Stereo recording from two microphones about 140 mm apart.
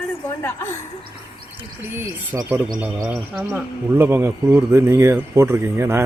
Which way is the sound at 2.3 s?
20° right (ahead or behind).